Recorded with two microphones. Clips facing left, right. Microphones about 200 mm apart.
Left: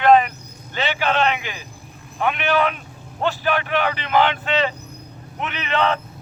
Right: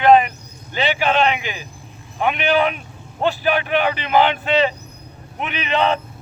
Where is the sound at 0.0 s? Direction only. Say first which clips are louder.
Right 2 dB; 15° right (ahead or behind).